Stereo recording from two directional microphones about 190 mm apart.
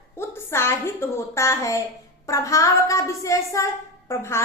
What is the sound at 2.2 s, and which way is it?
A woman's voice, 15° left (ahead or behind).